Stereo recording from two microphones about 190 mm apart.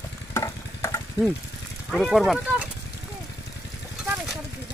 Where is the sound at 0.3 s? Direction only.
15° left (ahead or behind).